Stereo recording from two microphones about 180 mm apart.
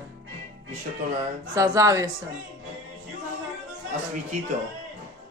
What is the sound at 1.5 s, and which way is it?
Speech, 15° right (ahead or behind).